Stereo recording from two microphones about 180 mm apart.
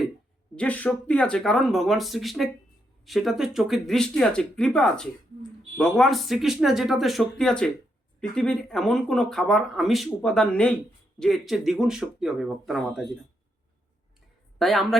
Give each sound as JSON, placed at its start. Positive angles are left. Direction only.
{"t": 0.5, "sound": "speech", "side_deg": 5}
{"t": 14.6, "sound": "speech", "side_deg": 0}